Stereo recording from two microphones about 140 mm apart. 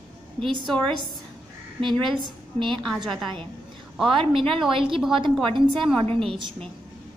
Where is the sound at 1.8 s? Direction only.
35° right (ahead or behind).